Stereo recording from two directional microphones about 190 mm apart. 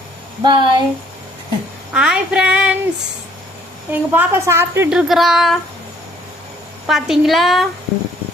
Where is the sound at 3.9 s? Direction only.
10° right (ahead or behind).